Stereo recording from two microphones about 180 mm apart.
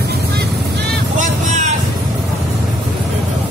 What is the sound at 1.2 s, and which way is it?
Vehicle, 40° right (ahead or behind).